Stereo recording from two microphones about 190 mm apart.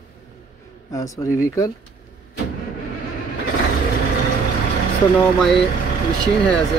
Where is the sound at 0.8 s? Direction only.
15° left (ahead or behind).